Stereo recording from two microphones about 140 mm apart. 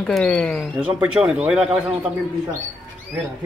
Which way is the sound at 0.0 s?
5° left (ahead or behind).